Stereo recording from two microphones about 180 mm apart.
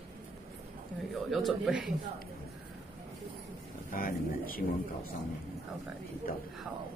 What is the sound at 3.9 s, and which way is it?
Speech, 50° left (ahead or behind).